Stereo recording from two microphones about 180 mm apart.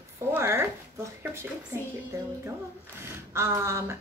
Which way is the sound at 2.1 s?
15° right (ahead or behind).